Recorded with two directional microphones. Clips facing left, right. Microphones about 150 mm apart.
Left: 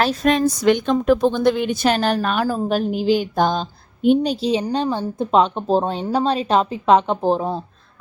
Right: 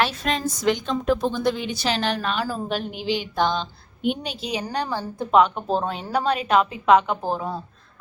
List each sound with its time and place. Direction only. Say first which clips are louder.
0.0 s a woman's voice: left 4 dB; 40° left (ahead or behind)
0.3 s a woman's voice: left 7 dB; 65° left (ahead or behind); by 4.6 s 30° left (ahead or behind)
4.7 s speech: left 6 dB; 20° left (ahead or behind)